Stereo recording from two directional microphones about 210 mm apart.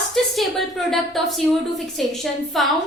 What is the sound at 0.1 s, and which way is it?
A woman's voice, centre (ahead or behind).